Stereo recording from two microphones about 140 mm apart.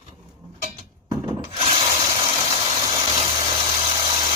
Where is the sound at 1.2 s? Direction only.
35° right (ahead or behind).